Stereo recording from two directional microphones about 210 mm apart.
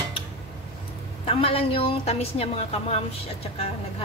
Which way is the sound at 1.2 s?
25° left (ahead or behind).